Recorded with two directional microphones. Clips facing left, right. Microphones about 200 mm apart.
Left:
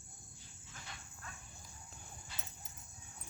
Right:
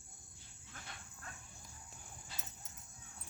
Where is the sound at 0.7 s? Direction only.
55° right (ahead or behind).